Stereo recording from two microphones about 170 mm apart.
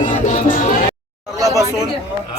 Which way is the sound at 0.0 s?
45° left (ahead or behind).